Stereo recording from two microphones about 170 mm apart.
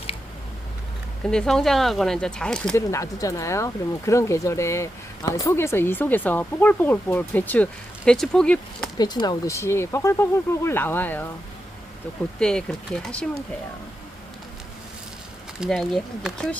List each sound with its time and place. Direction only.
1.2 s speech: 5° left (ahead or behind)
2.7 s speech: 20° left (ahead or behind)
9.0 s speech: 25° left (ahead or behind)
12.4 s speech: 5° left (ahead or behind)
15.6 s speech: centre (ahead or behind)